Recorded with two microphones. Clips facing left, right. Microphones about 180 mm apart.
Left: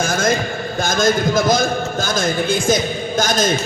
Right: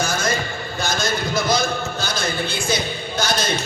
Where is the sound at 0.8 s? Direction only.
45° left (ahead or behind).